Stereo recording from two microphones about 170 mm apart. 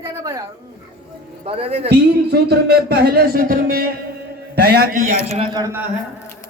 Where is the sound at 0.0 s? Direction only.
20° right (ahead or behind).